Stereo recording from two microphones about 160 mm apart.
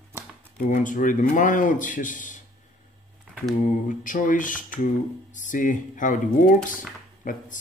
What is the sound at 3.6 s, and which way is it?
A man's voice, 55° left (ahead or behind).